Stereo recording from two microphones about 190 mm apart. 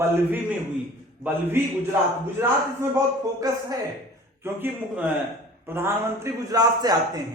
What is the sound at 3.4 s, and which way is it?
A man's voice, 20° right (ahead or behind).